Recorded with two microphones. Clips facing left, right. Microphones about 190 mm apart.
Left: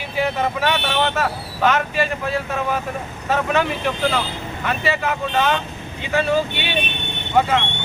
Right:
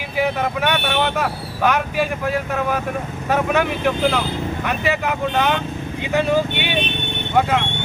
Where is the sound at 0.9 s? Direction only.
10° right (ahead or behind).